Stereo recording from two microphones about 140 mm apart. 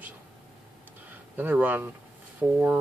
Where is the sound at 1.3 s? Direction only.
15° right (ahead or behind).